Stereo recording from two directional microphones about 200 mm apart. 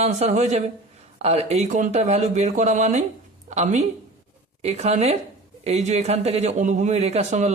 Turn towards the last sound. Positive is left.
turn(degrees=-35)  # may be behind; listen again after turning